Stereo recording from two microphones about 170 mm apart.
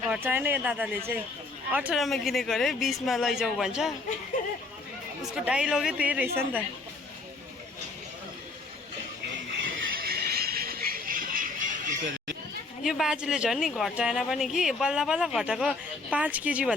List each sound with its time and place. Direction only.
0.0 s speech: 10° right (ahead or behind)
5.2 s speech: 5° right (ahead or behind)
10.0 s a sound: 65° right (ahead or behind)
12.8 s speech: centre (ahead or behind)